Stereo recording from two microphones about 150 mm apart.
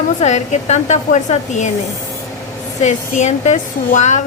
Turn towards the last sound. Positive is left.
turn(degrees=50)  # may be behind; listen again after turning